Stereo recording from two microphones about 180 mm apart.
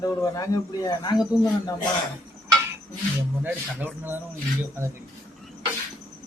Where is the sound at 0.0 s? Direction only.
20° left (ahead or behind).